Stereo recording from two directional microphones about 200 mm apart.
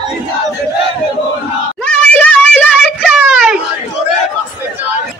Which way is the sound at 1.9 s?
5° left (ahead or behind).